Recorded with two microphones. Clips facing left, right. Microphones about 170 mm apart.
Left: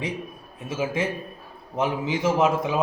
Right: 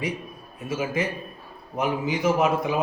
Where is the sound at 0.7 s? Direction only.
25° left (ahead or behind).